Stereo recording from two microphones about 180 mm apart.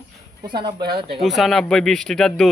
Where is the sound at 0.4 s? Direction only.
25° right (ahead or behind).